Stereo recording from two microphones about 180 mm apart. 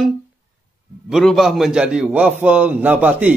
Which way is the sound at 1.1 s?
Centre (ahead or behind).